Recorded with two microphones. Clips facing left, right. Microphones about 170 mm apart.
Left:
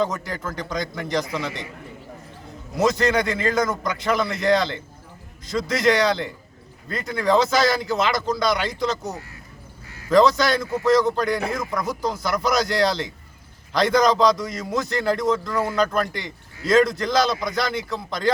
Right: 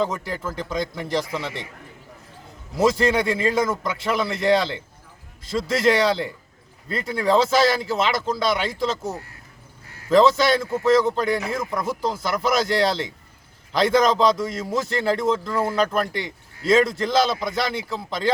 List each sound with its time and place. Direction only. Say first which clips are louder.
0.0 s a man's voice: even; 5° right (ahead or behind)
2.7 s a man's voice: right 1 dB; 5° right (ahead or behind)
10.1 s a man's voice: right 1 dB; 5° right (ahead or behind)